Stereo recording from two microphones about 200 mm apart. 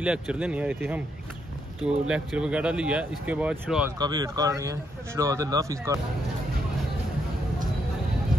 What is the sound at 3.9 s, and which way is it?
Speech, 20° right (ahead or behind).